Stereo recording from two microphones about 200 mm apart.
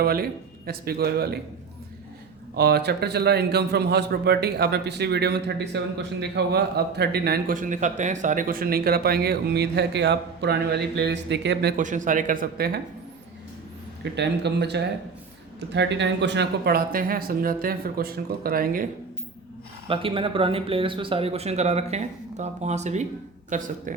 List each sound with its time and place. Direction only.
0.0 s a man's voice: 50° right (ahead or behind)
2.6 s a man's voice: 55° right (ahead or behind)
11.8 s speech: 40° right (ahead or behind)
14.0 s a man's voice: 60° right (ahead or behind)
19.9 s speech: 25° right (ahead or behind)